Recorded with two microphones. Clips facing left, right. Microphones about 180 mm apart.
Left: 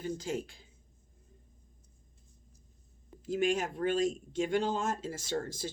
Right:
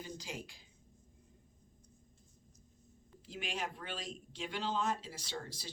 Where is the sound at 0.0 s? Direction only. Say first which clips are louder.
Left 10 dB; 50° left (ahead or behind).